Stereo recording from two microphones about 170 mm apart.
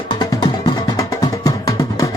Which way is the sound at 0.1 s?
25° left (ahead or behind).